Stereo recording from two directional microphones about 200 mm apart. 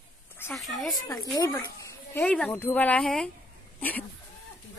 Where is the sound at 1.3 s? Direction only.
20° left (ahead or behind).